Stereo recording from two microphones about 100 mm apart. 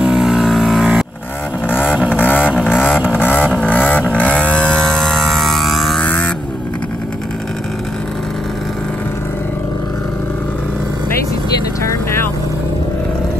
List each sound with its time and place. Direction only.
0.0 s vehicle: 5° right (ahead or behind)
2.1 s vehicle: 15° left (ahead or behind)
2.4 s vehicle: 5° right (ahead or behind)
3.2 s vehicle: 20° left (ahead or behind); by 6.0 s centre (ahead or behind)
6.0 s vehicle: 15° left (ahead or behind)
11.8 s vehicle: 30° left (ahead or behind)